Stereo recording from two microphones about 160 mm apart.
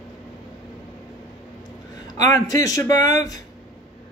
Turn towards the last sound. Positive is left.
turn(degrees=20)  # may be behind; listen again after turning